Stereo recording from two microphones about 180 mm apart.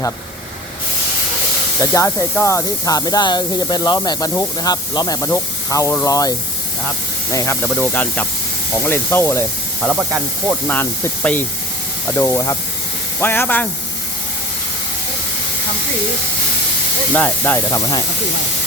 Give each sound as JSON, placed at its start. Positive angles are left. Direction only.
{"t": 1.8, "sound": "speech", "side_deg": 20}
{"t": 9.8, "sound": "speech", "side_deg": -5}
{"t": 10.7, "sound": "speech", "side_deg": 10}
{"t": 17.2, "sound": "speech", "side_deg": 10}